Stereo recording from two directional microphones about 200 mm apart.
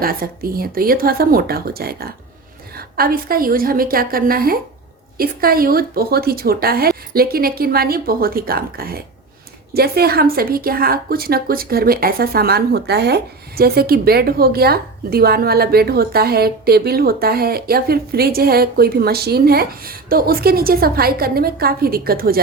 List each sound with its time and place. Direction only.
0.0 s a woman's voice: 45° right (ahead or behind)